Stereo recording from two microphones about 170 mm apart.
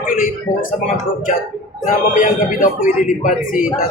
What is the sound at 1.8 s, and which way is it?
A man's voice, 50° left (ahead or behind).